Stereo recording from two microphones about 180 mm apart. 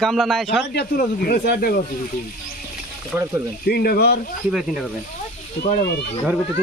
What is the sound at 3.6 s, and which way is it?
Speech, 60° left (ahead or behind).